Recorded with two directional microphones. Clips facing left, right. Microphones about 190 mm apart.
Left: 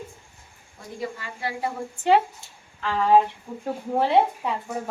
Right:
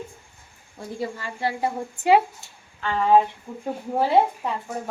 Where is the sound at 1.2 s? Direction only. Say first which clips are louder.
Right 4 dB; 30° right (ahead or behind).